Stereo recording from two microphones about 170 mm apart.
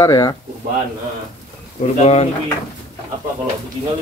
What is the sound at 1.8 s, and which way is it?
Speech, 40° left (ahead or behind).